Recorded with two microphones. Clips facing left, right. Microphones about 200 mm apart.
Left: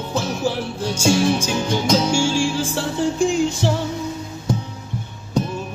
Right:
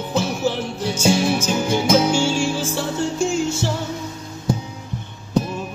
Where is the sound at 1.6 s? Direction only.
5° right (ahead or behind).